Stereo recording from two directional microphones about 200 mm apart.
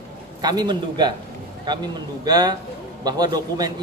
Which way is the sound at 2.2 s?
20° right (ahead or behind).